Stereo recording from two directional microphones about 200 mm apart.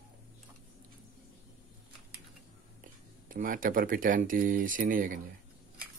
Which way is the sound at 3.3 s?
40° right (ahead or behind).